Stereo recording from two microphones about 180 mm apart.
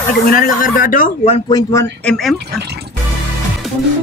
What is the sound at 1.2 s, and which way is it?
Speech, 35° left (ahead or behind).